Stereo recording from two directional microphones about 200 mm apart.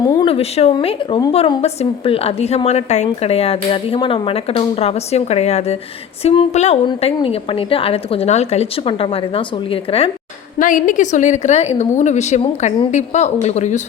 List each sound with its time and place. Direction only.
0.0 s a woman's voice: 20° left (ahead or behind)
10.6 s a woman's voice: 40° left (ahead or behind)